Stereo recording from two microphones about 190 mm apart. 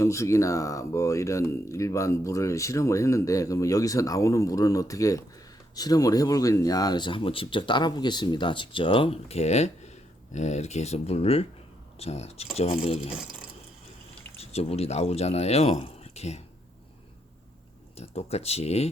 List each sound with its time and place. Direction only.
0.0 s speech: 15° left (ahead or behind); by 12.5 s 35° left (ahead or behind)
14.3 s speech: 35° left (ahead or behind)
17.9 s speech: 30° left (ahead or behind)